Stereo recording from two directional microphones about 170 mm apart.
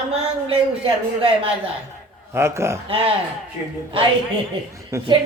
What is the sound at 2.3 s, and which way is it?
Speech, 15° right (ahead or behind).